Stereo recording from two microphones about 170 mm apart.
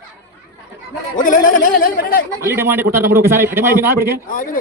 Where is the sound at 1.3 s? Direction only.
50° left (ahead or behind).